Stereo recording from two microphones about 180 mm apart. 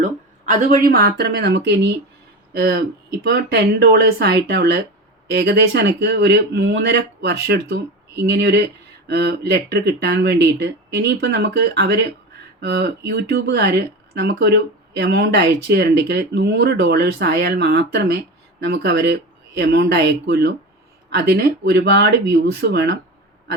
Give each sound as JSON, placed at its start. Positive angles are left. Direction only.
{"t": 0.0, "sound": "speech", "side_deg": -45}
{"t": 2.5, "sound": "speech", "side_deg": -60}